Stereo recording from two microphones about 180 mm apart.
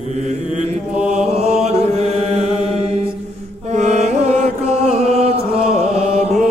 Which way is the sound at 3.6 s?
40° right (ahead or behind).